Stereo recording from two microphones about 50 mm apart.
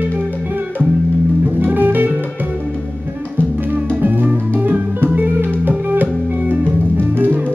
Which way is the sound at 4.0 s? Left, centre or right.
Right.